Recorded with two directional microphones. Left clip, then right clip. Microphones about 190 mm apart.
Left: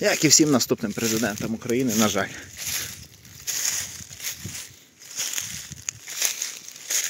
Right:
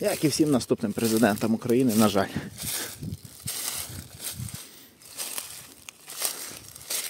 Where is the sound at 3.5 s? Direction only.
5° left (ahead or behind).